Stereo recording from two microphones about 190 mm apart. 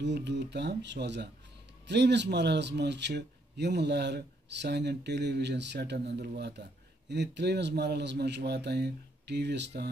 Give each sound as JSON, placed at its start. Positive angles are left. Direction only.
{"t": 0.0, "sound": "speech", "side_deg": -65}